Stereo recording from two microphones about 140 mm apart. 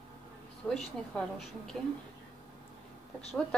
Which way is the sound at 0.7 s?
5° left (ahead or behind).